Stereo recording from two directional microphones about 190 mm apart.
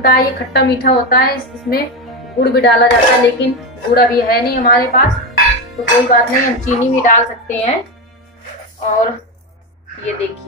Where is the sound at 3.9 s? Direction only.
55° left (ahead or behind).